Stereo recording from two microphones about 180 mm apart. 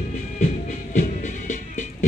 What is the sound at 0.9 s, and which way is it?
Music, 40° left (ahead or behind).